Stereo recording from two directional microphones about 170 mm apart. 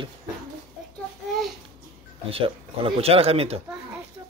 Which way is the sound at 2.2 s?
35° right (ahead or behind).